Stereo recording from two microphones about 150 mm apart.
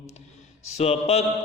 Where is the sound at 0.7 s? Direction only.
45° left (ahead or behind).